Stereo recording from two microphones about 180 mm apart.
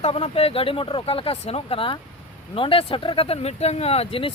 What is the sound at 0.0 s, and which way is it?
Speech, 35° left (ahead or behind).